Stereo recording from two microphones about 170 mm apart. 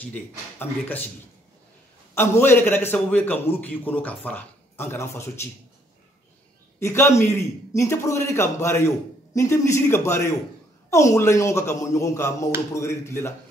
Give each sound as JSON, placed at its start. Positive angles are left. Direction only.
{"t": 0.0, "sound": "a man's voice", "side_deg": 10}
{"t": 2.1, "sound": "a man's voice", "side_deg": 15}
{"t": 6.8, "sound": "a man's voice", "side_deg": 15}